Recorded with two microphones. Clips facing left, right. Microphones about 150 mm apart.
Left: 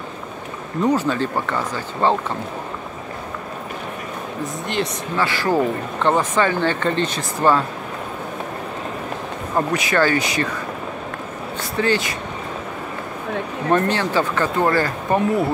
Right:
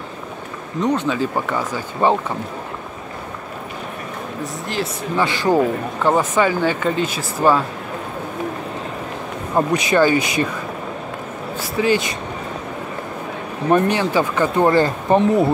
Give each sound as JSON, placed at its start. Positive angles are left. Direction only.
{"t": 0.8, "sound": "speech", "side_deg": 5}
{"t": 1.1, "sound": "speech", "side_deg": -10}
{"t": 5.1, "sound": "speech", "side_deg": -20}
{"t": 9.6, "sound": "speech", "side_deg": -15}
{"t": 11.5, "sound": "a sound", "side_deg": -10}
{"t": 13.7, "sound": "speech", "side_deg": -15}